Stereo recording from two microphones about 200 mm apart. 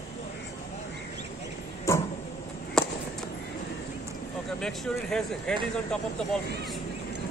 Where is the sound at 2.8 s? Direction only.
Centre (ahead or behind).